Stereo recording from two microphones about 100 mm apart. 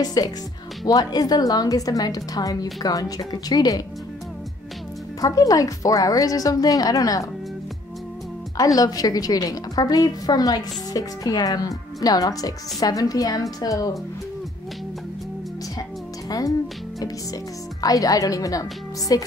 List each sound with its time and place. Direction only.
0.0 s a woman's voice: 40° left (ahead or behind)
5.2 s a woman's voice: 35° left (ahead or behind)
8.5 s a woman's voice: 35° left (ahead or behind)
16.3 s music: 40° left (ahead or behind)
17.8 s a woman's voice: 40° left (ahead or behind)